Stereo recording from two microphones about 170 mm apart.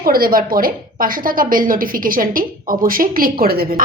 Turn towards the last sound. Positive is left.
turn(degrees=-60)  # may be behind; listen again after turning